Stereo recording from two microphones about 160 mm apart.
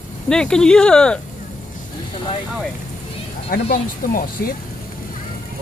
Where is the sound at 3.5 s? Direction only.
70° left (ahead or behind).